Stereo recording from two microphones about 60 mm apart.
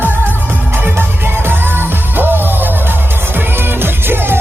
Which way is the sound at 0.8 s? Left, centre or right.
Right.